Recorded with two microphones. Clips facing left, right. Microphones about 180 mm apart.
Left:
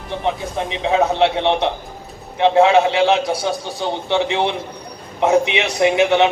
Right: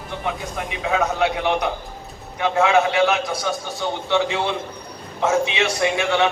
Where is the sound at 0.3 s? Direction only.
25° left (ahead or behind).